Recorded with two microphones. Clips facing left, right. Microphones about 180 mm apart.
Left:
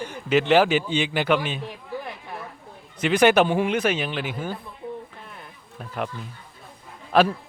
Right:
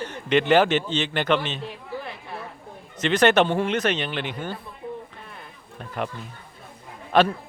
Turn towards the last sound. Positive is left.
turn(degrees=5)  # may be behind; listen again after turning